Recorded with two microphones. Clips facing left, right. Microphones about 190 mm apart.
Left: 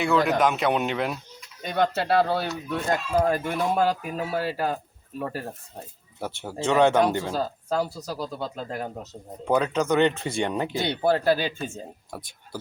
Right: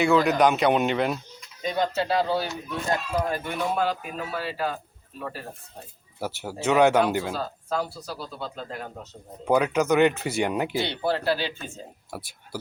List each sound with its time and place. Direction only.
0.0 s speech: centre (ahead or behind)
1.6 s speech: 55° left (ahead or behind)
3.2 s speech: 40° left (ahead or behind)
6.1 s speech: 5° right (ahead or behind)
7.3 s speech: 40° left (ahead or behind)
9.4 s speech: 10° right (ahead or behind)
10.8 s speech: 45° left (ahead or behind)
12.1 s speech: 5° right (ahead or behind)